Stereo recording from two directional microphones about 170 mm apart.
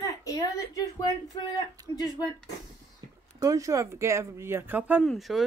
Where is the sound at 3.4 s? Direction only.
20° right (ahead or behind).